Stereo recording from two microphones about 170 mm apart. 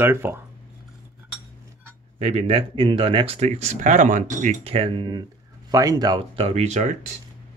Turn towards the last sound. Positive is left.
turn(degrees=-45)  # may be behind; listen again after turning